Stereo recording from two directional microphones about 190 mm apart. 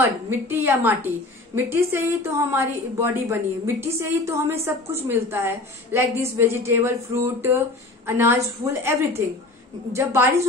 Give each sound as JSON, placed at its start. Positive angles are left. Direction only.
{"t": 0.0, "sound": "a woman's voice", "side_deg": -10}
{"t": 9.9, "sound": "a woman's voice", "side_deg": -15}